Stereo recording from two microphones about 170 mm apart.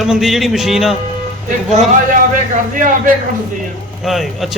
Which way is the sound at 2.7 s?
50° right (ahead or behind).